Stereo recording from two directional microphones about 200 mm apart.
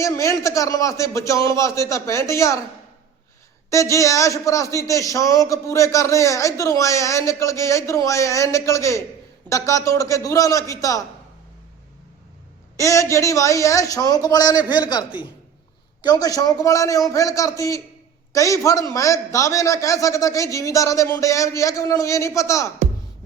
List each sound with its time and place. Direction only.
0.0 s speech: 15° left (ahead or behind)
3.7 s speech: 15° left (ahead or behind)
12.7 s speech: 15° left (ahead or behind)